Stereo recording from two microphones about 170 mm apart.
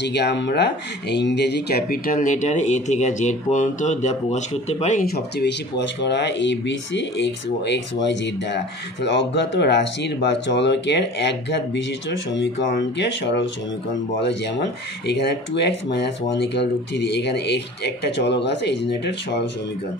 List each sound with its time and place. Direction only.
0.0 s speech: 90° left; by 5.0 s 40° left (ahead or behind)
5.1 s speech: 85° left
15.0 s speech: 80° left